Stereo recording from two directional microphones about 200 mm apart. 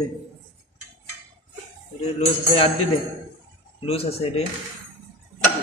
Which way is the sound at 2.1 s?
30° left (ahead or behind).